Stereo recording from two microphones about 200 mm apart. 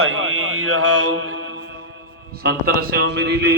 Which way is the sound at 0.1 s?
85° right.